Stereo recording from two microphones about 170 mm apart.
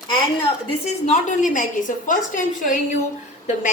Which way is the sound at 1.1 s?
45° left (ahead or behind).